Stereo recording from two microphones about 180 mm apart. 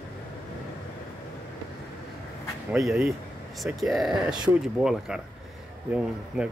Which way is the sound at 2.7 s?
5° right (ahead or behind).